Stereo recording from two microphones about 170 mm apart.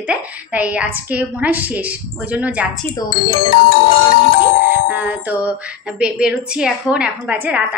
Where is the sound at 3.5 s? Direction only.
60° left (ahead or behind).